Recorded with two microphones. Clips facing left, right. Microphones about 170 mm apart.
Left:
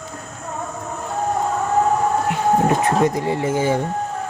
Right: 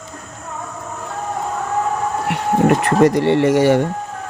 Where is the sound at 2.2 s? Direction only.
70° right (ahead or behind).